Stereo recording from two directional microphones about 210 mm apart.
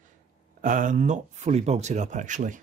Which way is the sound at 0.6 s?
40° right (ahead or behind).